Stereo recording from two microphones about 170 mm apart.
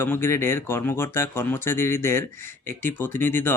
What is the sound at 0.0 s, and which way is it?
Speech, 15° left (ahead or behind).